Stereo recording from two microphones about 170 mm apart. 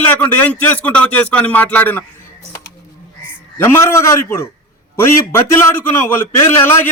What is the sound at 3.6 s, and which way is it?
A man's voice, 15° left (ahead or behind).